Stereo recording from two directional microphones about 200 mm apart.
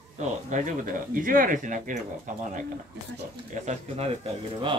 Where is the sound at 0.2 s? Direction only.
40° right (ahead or behind).